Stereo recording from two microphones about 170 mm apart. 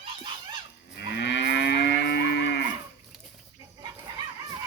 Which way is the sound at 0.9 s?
85° left.